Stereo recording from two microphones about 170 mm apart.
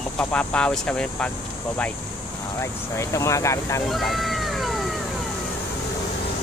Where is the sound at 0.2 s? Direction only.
5° left (ahead or behind).